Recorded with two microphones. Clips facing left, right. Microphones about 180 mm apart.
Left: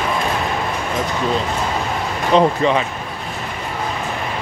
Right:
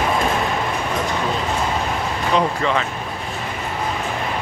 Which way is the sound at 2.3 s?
20° left (ahead or behind).